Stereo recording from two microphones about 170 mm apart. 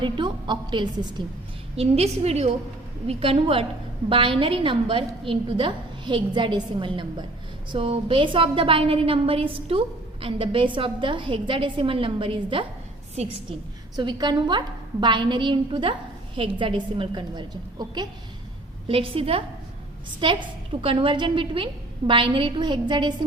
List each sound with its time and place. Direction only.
0.0 s a woman's voice: 25° right (ahead or behind)
1.7 s a woman's voice: 35° right (ahead or behind)
13.9 s a woman's voice: 25° right (ahead or behind)